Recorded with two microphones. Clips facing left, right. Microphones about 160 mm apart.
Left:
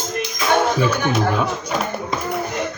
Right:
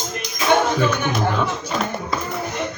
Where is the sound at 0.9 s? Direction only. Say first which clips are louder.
Left 2 dB; 10° left (ahead or behind).